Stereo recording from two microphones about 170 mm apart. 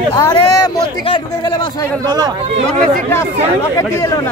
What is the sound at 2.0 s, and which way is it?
Speech, 25° right (ahead or behind).